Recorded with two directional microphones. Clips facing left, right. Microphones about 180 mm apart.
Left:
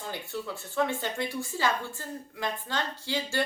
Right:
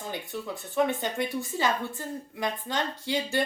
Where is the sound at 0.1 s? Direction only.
20° right (ahead or behind).